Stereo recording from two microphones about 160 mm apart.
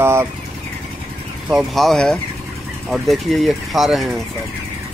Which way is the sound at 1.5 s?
Centre (ahead or behind).